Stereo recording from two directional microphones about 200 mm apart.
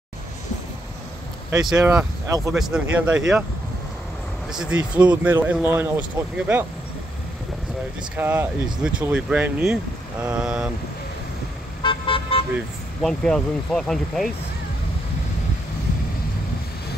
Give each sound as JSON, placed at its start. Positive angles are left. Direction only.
{"t": 1.5, "sound": "speech", "side_deg": -15}
{"t": 2.5, "sound": "speech", "side_deg": -5}
{"t": 4.5, "sound": "speech", "side_deg": -5}
{"t": 8.2, "sound": "speech", "side_deg": -10}
{"t": 11.8, "sound": "vehicle", "side_deg": 25}
{"t": 13.0, "sound": "speech", "side_deg": 5}